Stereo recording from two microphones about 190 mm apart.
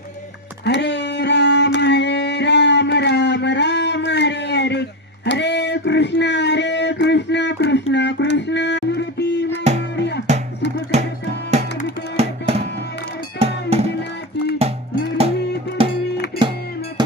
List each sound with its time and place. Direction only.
0.6 s a sound: 65° left (ahead or behind)
10.0 s music: 60° left (ahead or behind)
10.9 s music: 35° right (ahead or behind)
12.1 s music: 35° right (ahead or behind)
15.8 s music: 30° right (ahead or behind)